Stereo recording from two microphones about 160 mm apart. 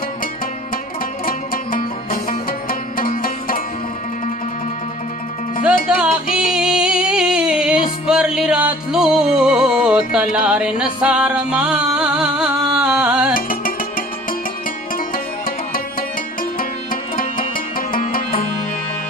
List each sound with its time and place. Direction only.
1.2 s music: 60° left (ahead or behind)
5.9 s music: 5° right (ahead or behind)
13.3 s music: 60° left (ahead or behind)
16.5 s music: 60° left (ahead or behind)